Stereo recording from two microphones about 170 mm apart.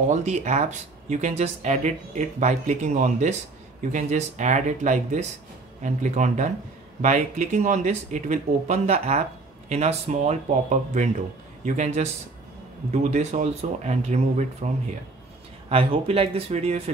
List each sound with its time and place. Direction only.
0.1 s speech: 45° right (ahead or behind)
15.7 s speech: 35° right (ahead or behind)